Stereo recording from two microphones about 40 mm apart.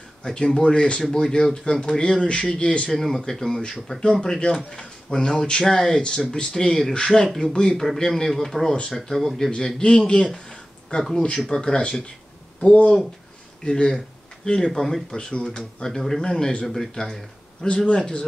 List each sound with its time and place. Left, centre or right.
0.2 s speech: centre
2.9 s speech: centre
4.7 s speech: centre
11.0 s speech: centre
11.4 s speech: centre
12.5 s speech: left
13.7 s speech: centre
15.1 s speech: left
17.6 s speech: left